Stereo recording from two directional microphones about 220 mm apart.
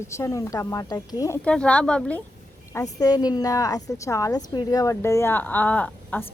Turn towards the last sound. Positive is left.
turn(degrees=5)  # may be behind; listen again after turning